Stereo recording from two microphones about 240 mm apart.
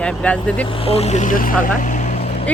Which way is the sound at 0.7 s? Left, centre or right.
Left.